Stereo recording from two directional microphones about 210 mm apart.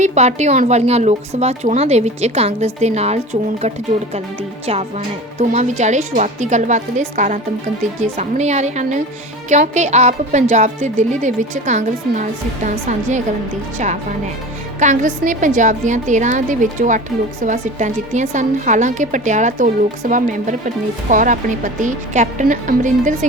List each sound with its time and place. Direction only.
0.0 s a woman's voice: 35° right (ahead or behind)
4.6 s a woman's voice: 30° right (ahead or behind)